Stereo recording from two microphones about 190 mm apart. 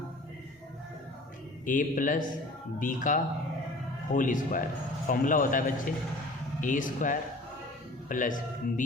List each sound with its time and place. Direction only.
1.6 s a man's voice: 45° left (ahead or behind)